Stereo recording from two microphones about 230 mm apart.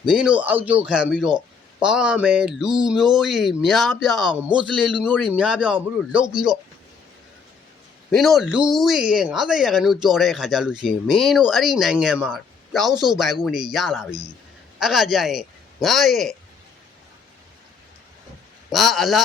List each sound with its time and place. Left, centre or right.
0.0 s speech: centre
8.1 s speech: centre
12.9 s speech: centre
13.7 s a man's voice: centre
18.7 s speech: centre